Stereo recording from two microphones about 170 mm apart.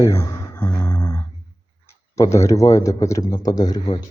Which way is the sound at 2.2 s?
15° left (ahead or behind).